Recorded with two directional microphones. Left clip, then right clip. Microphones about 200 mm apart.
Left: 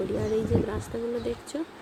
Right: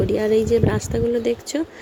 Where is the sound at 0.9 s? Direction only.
35° right (ahead or behind).